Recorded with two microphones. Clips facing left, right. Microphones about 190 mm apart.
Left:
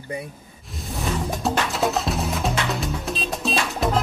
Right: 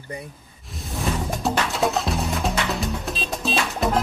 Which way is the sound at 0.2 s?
Centre (ahead or behind).